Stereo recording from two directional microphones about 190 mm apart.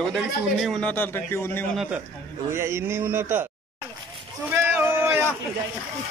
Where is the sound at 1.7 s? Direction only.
5° right (ahead or behind).